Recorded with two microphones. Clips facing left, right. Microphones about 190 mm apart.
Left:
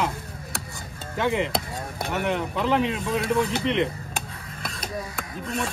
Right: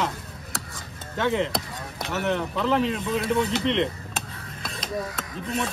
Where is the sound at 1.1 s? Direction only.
10° left (ahead or behind).